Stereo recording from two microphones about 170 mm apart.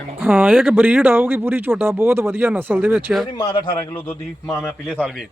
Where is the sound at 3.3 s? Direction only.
25° left (ahead or behind).